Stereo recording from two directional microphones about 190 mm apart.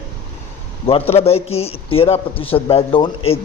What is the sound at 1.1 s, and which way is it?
Speech, 30° left (ahead or behind).